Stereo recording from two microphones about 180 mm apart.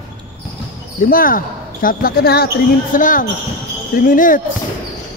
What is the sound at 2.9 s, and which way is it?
Speech, 45° left (ahead or behind).